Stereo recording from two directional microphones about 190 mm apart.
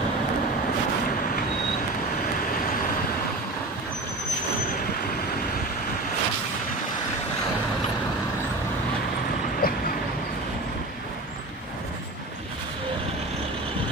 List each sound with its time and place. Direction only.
9.6 s vehicle: 50° left (ahead or behind)